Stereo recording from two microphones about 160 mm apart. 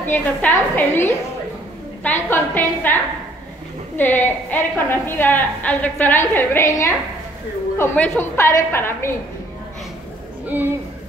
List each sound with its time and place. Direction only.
0.0 s a woman's voice: 10° left (ahead or behind)